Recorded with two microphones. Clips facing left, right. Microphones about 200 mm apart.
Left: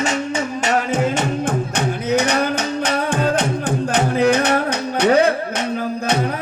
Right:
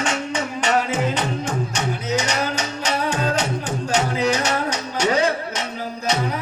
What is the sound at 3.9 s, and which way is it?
Music, 55° left (ahead or behind).